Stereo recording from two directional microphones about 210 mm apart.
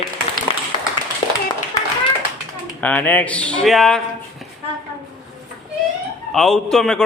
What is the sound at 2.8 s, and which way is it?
A man's voice, 10° left (ahead or behind).